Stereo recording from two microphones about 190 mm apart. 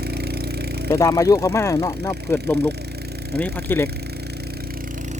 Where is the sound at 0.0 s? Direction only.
55° right (ahead or behind).